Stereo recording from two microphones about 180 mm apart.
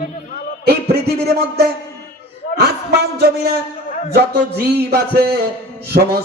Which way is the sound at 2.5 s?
65° right (ahead or behind).